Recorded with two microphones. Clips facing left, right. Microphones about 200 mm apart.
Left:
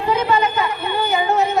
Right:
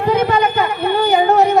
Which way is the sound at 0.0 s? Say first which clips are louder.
Right 3 dB; 55° right (ahead or behind).